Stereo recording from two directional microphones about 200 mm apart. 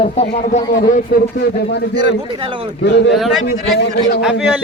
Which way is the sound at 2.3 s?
25° right (ahead or behind).